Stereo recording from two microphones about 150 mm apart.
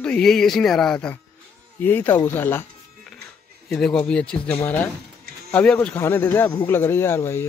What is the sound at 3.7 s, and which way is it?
Speech, centre (ahead or behind).